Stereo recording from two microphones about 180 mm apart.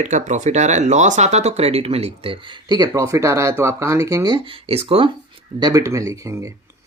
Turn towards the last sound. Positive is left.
turn(degrees=-15)  # may be behind; listen again after turning